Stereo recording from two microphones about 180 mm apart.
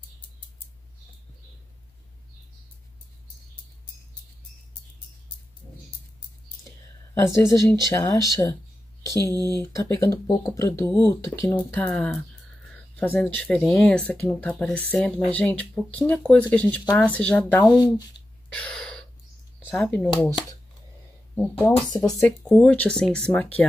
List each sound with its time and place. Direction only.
7.2 s speech: 15° left (ahead or behind)
9.1 s speech: 20° right (ahead or behind)
9.6 s speech: 15° left (ahead or behind)
18.5 s gasp: 5° left (ahead or behind)
19.7 s speech: 5° left (ahead or behind)
21.4 s speech: 10° left (ahead or behind)
22.5 s speech: 5° left (ahead or behind)